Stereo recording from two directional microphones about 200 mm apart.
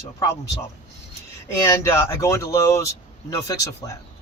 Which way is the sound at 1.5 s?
15° left (ahead or behind).